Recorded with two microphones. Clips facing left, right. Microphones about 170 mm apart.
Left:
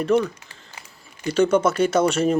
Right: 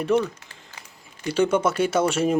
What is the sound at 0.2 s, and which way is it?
Speech, 15° left (ahead or behind).